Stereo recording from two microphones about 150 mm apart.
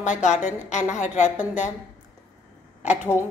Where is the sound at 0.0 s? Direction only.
55° left (ahead or behind).